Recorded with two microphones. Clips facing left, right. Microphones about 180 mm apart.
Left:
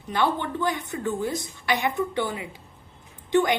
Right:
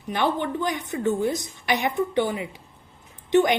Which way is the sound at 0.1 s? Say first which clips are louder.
Right 1 dB; 15° right (ahead or behind).